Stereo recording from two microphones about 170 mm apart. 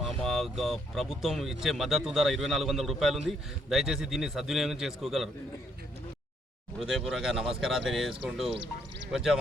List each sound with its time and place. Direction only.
0.0 s speech: centre (ahead or behind)
6.7 s speech: centre (ahead or behind)
9.1 s speech: centre (ahead or behind)